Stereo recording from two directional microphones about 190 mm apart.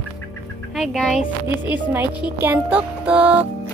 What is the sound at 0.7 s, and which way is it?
A child's voice, centre (ahead or behind).